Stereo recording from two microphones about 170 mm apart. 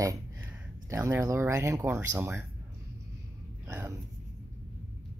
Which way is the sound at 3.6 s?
15° right (ahead or behind).